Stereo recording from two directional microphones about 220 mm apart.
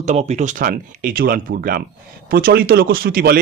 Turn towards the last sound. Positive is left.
turn(degrees=-45)  # may be behind; listen again after turning